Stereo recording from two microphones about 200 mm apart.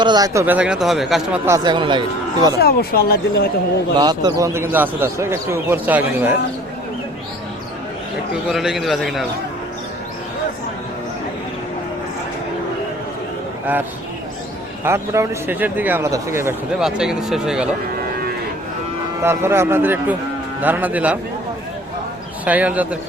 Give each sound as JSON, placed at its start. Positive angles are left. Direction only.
{"t": 0.0, "sound": "speech", "side_deg": -20}
{"t": 1.5, "sound": "speech", "side_deg": -20}
{"t": 2.6, "sound": "speech", "side_deg": 50}
{"t": 3.9, "sound": "speech", "side_deg": -20}
{"t": 8.4, "sound": "a man's voice", "side_deg": 0}
{"t": 14.8, "sound": "speech", "side_deg": -15}
{"t": 19.2, "sound": "speech", "side_deg": -10}
{"t": 22.4, "sound": "speech", "side_deg": -5}